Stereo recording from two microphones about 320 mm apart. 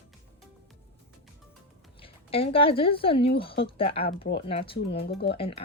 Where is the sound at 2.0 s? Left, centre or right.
Centre.